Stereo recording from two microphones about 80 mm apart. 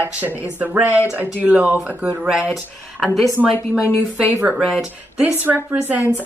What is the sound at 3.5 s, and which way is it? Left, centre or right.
Speech, left.